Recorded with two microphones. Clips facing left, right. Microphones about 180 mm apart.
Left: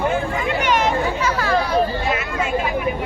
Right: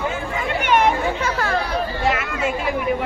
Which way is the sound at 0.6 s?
55° right (ahead or behind).